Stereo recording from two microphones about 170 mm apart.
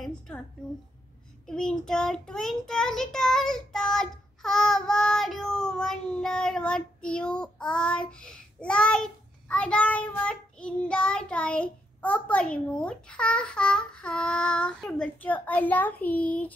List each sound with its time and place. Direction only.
0.3 s a child's voice: 5° left (ahead or behind)
1.5 s a child's voice: 5° left (ahead or behind)